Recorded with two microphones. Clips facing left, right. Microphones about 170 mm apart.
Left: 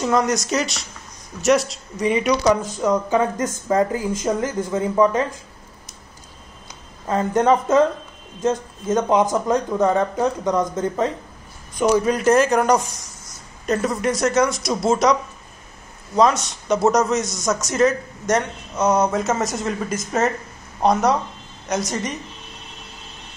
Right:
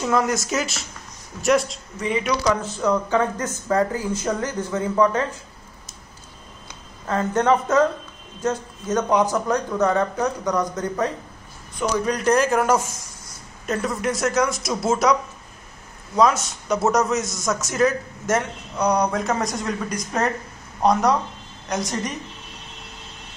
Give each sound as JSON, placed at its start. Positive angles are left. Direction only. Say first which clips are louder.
{"t": 0.0, "sound": "a man's voice", "louder": "left 2 dB", "side_deg": 0}
{"t": 2.5, "sound": "speech", "louder": "left 2 dB", "side_deg": 15}
{"t": 7.1, "sound": "speech", "louder": "left 2 dB", "side_deg": 15}
{"t": 12.0, "sound": "a man's voice", "louder": "left 3 dB", "side_deg": 5}
{"t": 16.2, "sound": "a man's voice", "louder": "left 1 dB", "side_deg": 0}